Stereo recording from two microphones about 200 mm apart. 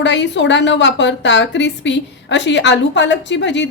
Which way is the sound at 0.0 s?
65° left (ahead or behind).